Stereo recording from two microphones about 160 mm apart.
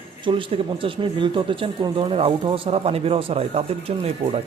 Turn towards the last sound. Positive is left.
turn(degrees=-40)  # may be behind; listen again after turning